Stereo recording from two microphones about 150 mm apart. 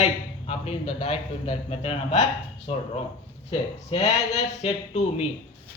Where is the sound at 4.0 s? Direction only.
40° left (ahead or behind).